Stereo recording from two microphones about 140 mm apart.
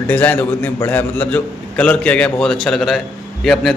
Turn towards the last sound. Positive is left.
turn(degrees=0)  # may be behind; listen again after turning